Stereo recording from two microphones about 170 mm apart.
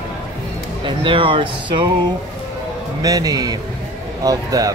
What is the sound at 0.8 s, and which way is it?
Speech, 30° right (ahead or behind).